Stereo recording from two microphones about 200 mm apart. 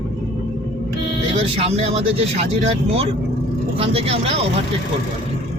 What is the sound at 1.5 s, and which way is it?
Speech, 30° right (ahead or behind).